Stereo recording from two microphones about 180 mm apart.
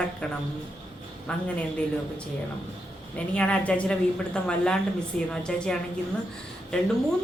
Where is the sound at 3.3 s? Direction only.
5° left (ahead or behind).